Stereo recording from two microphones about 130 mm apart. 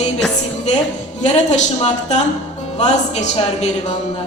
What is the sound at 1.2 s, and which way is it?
A woman's voice, 65° left (ahead or behind).